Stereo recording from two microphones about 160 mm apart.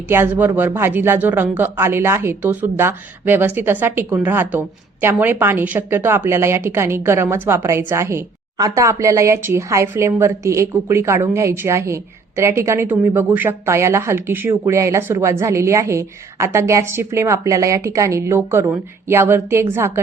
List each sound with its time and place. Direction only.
0.1 s speech: 15° right (ahead or behind)